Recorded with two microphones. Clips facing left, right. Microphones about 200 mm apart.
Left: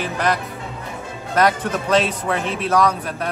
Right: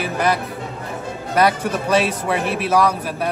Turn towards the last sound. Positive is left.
turn(degrees=-10)  # may be behind; listen again after turning